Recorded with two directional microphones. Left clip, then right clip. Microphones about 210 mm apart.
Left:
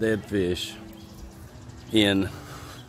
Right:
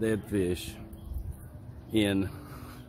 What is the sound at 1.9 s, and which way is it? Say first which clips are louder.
Speech: left 6 dB; 15° left (ahead or behind).